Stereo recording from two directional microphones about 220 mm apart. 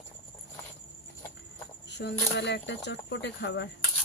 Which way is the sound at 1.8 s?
50° left (ahead or behind).